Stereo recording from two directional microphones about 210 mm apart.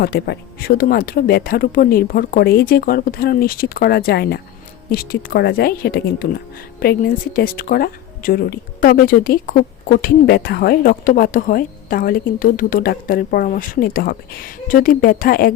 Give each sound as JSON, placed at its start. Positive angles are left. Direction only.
{"t": 0.0, "sound": "speech", "side_deg": 50}